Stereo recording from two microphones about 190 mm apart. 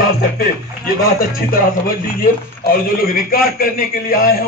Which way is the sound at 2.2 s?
50° left (ahead or behind).